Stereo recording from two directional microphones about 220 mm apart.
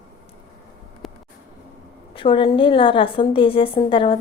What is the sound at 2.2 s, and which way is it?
A woman's voice, 20° left (ahead or behind).